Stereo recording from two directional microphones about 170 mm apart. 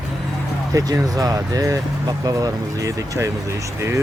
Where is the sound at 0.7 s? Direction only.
20° right (ahead or behind).